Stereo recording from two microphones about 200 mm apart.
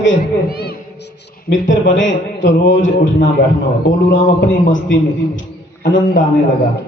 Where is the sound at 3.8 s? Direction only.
55° left (ahead or behind).